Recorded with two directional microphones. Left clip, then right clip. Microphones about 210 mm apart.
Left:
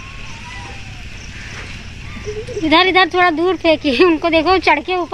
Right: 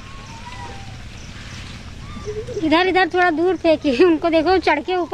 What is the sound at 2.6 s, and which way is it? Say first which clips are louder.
Speech: left 5 dB; 5° left (ahead or behind).